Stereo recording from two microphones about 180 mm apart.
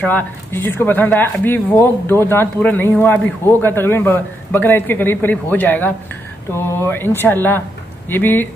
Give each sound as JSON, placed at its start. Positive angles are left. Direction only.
{"t": 0.0, "sound": "speech", "side_deg": 10}